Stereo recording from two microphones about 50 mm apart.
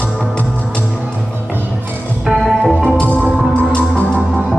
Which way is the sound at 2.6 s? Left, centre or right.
Centre.